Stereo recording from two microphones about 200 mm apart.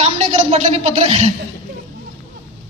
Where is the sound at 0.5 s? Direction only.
35° right (ahead or behind).